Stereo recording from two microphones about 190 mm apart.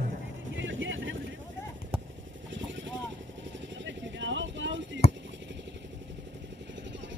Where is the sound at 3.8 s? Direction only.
70° right (ahead or behind).